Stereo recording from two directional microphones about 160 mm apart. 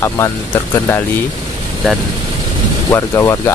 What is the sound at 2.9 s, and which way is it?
Speech, 15° left (ahead or behind).